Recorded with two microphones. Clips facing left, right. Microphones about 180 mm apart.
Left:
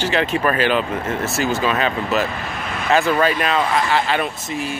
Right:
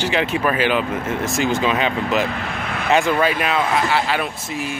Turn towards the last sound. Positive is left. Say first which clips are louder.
# left 1 dB
turn(degrees=-10)  # may be behind; listen again after turning